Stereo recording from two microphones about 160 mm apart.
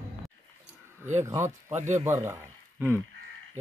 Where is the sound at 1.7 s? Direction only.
50° right (ahead or behind).